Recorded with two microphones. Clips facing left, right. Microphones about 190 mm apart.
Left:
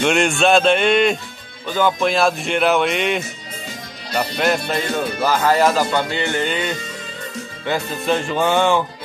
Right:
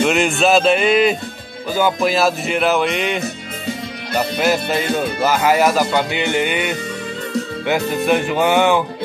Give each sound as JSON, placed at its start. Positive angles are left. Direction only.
{"t": 0.0, "sound": "speech", "side_deg": 0}